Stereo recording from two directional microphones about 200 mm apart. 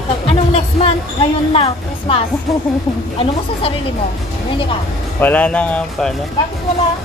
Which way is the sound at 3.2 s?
30° left (ahead or behind).